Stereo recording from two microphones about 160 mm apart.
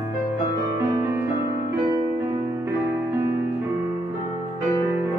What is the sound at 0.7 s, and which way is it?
Music, 15° right (ahead or behind).